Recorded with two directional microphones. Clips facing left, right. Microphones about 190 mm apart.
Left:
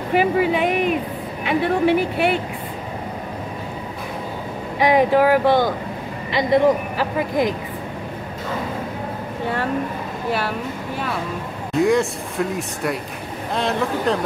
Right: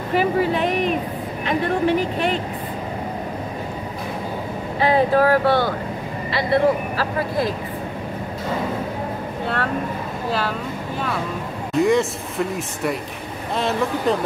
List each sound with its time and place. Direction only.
0.1 s a sound: 10° left (ahead or behind)
1.4 s speech: 10° left (ahead or behind)
4.7 s speech: 15° left (ahead or behind)
11.7 s speech: centre (ahead or behind)